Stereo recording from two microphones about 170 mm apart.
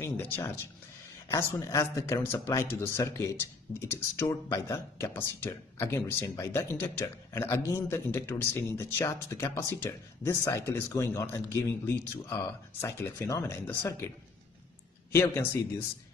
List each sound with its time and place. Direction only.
0.0 s speech: 15° left (ahead or behind)
15.1 s speech: 15° left (ahead or behind)